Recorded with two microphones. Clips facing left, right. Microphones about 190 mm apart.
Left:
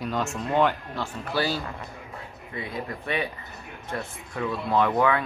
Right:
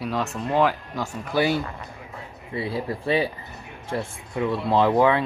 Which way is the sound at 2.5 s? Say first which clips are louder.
Right 6 dB; 30° right (ahead or behind).